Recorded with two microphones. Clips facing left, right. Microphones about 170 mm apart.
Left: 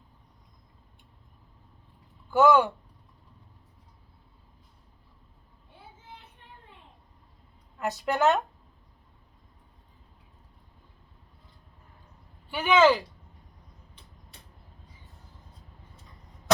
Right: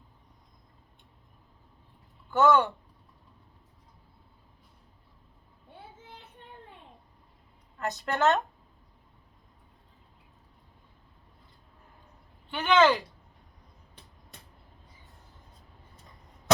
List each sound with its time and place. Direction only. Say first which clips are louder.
2.3 s speech: left 2 dB; 10° left (ahead or behind)
7.8 s speech: left 2 dB; 10° left (ahead or behind)
12.5 s speech: left 2 dB; 10° left (ahead or behind)